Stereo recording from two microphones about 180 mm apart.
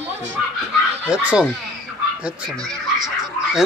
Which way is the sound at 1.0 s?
5° right (ahead or behind).